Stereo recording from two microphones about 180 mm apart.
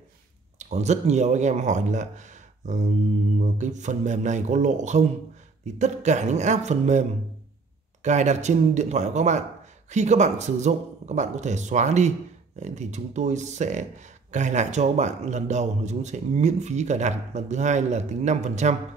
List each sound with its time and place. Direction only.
0.6 s speech: 40° right (ahead or behind)